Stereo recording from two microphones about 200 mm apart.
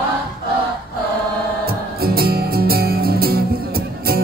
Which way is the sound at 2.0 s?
50° right (ahead or behind).